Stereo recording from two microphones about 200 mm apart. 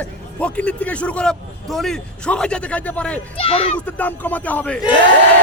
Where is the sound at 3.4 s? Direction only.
30° left (ahead or behind).